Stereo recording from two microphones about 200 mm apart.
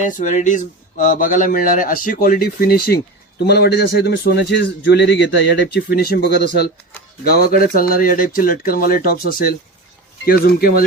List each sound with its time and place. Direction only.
0.0 s a man's voice: 40° left (ahead or behind)